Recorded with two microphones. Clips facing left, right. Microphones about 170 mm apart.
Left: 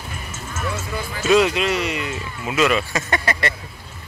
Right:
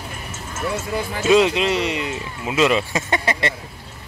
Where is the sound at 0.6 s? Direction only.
25° right (ahead or behind).